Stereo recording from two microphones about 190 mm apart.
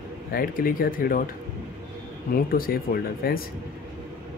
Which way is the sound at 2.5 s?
50° left (ahead or behind).